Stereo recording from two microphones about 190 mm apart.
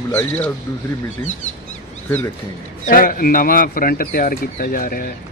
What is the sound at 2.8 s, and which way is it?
Speech, 45° left (ahead or behind).